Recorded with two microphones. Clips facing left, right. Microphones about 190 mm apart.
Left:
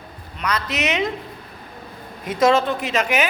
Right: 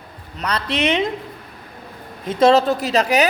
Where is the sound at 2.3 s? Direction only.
30° right (ahead or behind).